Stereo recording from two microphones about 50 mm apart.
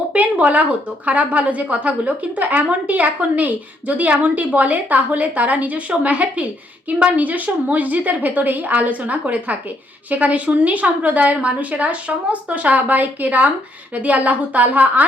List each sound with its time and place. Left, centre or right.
0.1 s a woman's voice: right